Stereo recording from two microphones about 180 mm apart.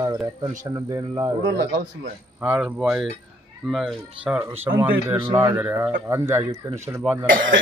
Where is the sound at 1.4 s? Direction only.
75° right (ahead or behind).